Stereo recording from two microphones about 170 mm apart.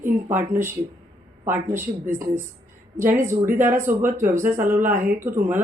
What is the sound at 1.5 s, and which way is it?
Speech, 10° right (ahead or behind).